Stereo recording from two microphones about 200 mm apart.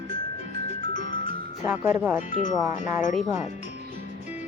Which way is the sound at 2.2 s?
40° left (ahead or behind).